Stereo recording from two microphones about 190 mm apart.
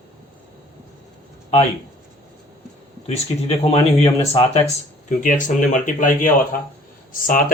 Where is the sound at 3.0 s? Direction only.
35° left (ahead or behind).